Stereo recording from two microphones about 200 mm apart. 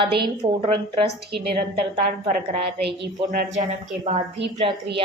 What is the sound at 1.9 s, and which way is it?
A woman's voice, 40° right (ahead or behind).